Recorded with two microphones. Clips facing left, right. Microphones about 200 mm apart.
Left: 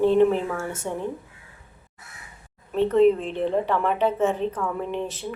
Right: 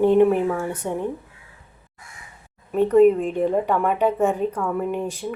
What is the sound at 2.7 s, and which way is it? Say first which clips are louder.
A woman's voice: right 3 dB; 10° right (ahead or behind).